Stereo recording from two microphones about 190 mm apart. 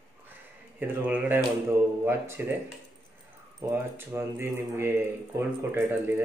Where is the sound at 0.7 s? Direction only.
5° right (ahead or behind).